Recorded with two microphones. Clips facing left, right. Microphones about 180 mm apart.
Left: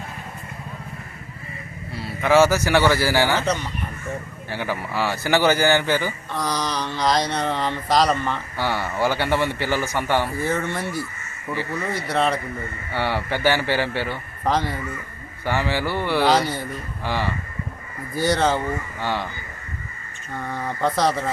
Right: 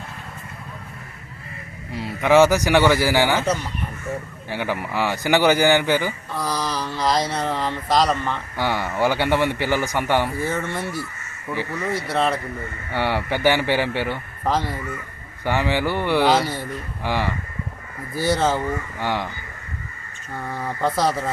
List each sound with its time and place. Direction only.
1.9 s a man's voice: 15° right (ahead or behind)
6.3 s speech: 5° right (ahead or behind)
8.5 s a man's voice: 15° right (ahead or behind)
10.4 s speech: centre (ahead or behind)
12.9 s a man's voice: 15° right (ahead or behind)
14.4 s speech: centre (ahead or behind)
15.4 s a man's voice: 15° right (ahead or behind)
16.3 s speech: centre (ahead or behind)
17.0 s a man's voice: 15° right (ahead or behind)
18.1 s speech: 5° right (ahead or behind)
18.9 s a man's voice: 15° right (ahead or behind)
20.5 s speech: centre (ahead or behind)